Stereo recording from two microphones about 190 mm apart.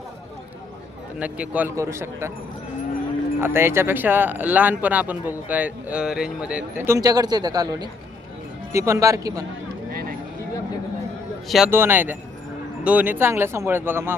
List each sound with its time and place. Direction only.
1.2 s speech: 5° right (ahead or behind)
3.4 s speech: 10° right (ahead or behind)
9.9 s a sound: 55° right (ahead or behind)
11.4 s a man's voice: centre (ahead or behind)
11.7 s speech: 10° right (ahead or behind)